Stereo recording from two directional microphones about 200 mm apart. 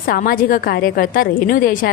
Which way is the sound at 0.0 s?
45° left (ahead or behind).